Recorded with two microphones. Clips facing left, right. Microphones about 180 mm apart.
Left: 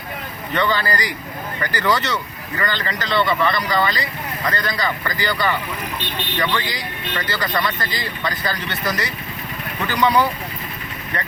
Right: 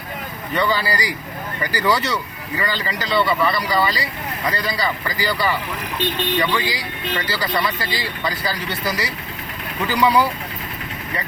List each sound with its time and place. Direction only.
0.5 s speech: 10° right (ahead or behind)